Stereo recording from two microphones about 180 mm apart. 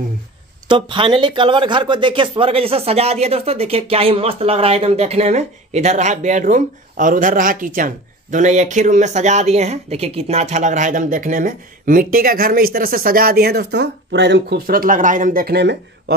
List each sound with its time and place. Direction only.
0.7 s speech: 25° right (ahead or behind); by 15.8 s 65° right (ahead or behind)